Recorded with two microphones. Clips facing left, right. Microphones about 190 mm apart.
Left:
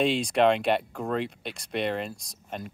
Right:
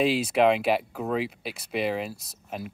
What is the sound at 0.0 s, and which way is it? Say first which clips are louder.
Speech: right 1 dB; 5° right (ahead or behind).